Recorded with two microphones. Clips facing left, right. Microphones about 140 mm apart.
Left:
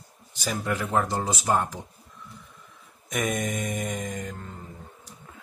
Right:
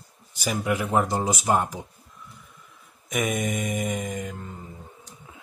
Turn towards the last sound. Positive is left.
turn(degrees=-5)  # may be behind; listen again after turning